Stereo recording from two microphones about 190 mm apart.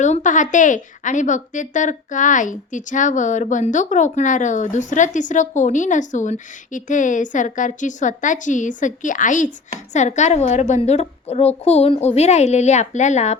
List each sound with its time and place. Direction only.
0.0 s a woman's voice: 40° left (ahead or behind)